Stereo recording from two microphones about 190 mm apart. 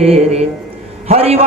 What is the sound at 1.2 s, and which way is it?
Speech, 30° right (ahead or behind).